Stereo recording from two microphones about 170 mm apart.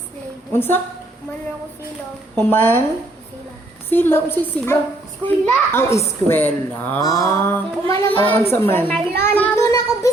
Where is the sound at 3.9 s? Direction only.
15° left (ahead or behind).